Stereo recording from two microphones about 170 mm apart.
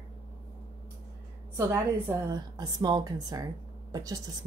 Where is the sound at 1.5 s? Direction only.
15° right (ahead or behind).